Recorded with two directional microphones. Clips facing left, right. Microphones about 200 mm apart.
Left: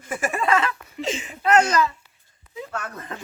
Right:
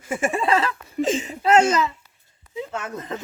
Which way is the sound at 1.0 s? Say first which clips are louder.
Right 7 dB; 45° right (ahead or behind).